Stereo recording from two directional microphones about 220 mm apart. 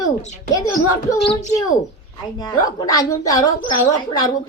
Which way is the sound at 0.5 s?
15° left (ahead or behind).